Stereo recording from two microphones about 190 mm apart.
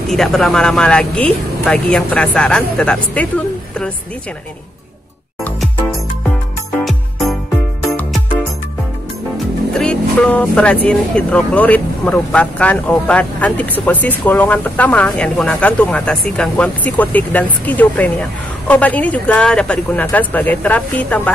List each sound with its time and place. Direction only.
0.1 s speech: centre (ahead or behind)
6.8 s music: centre (ahead or behind)
9.8 s speech: 5° left (ahead or behind)